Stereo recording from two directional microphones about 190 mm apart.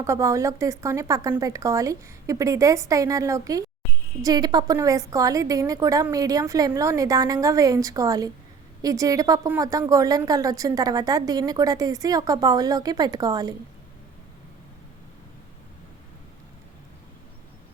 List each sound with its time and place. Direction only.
0.0 s a woman's voice: 15° right (ahead or behind)